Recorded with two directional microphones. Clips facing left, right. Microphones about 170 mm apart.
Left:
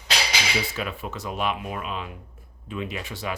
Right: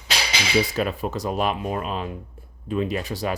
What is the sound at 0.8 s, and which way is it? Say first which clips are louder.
Speech: right 7 dB; 40° right (ahead or behind).